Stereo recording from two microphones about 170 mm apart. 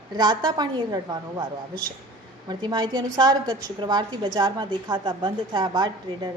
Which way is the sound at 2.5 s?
25° right (ahead or behind).